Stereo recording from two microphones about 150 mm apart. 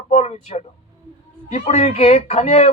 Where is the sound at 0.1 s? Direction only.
45° left (ahead or behind).